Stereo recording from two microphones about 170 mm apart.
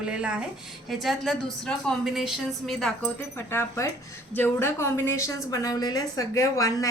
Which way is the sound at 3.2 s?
15° left (ahead or behind).